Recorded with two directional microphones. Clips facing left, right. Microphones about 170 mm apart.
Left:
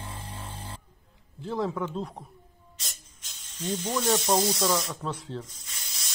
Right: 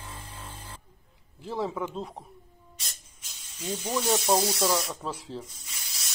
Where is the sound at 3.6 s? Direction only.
10° right (ahead or behind).